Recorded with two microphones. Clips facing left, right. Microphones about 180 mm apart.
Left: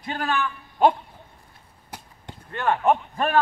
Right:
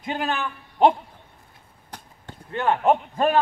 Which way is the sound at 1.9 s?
10° left (ahead or behind).